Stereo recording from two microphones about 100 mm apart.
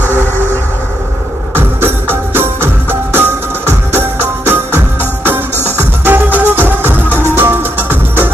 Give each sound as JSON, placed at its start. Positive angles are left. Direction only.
{"t": 1.5, "sound": "music", "side_deg": -20}